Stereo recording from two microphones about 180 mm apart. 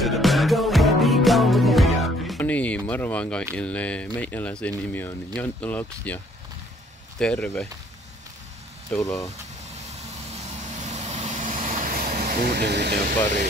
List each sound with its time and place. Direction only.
0.0 s music: centre (ahead or behind)
2.3 s a sound: 10° left (ahead or behind)
3.5 s speech: 5° left (ahead or behind)
8.9 s speech: 5° left (ahead or behind)
10.4 s vehicle: 40° right (ahead or behind); by 12.9 s 70° right (ahead or behind)